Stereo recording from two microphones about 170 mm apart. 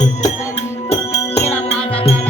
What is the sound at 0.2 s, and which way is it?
Music, 40° left (ahead or behind).